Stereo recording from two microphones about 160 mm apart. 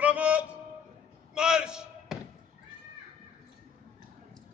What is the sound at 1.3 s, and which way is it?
Slam, 5° right (ahead or behind).